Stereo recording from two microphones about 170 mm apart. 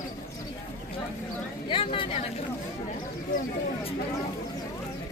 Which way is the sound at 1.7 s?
30° left (ahead or behind).